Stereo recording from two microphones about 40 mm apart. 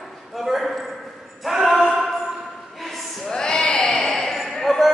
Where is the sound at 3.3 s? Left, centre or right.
Centre.